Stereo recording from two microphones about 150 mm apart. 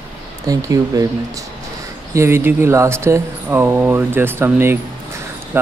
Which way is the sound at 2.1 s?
20° right (ahead or behind).